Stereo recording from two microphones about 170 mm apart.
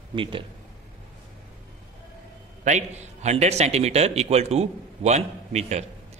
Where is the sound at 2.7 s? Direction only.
40° right (ahead or behind).